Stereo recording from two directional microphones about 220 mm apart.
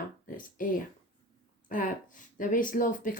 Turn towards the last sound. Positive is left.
turn(degrees=40)  # may be behind; listen again after turning